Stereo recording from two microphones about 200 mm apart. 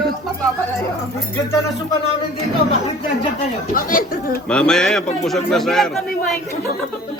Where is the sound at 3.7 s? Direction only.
45° left (ahead or behind).